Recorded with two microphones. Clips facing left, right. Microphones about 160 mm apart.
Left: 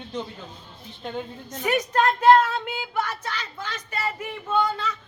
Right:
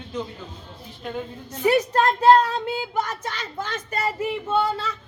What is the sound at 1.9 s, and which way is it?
Speech, 35° right (ahead or behind).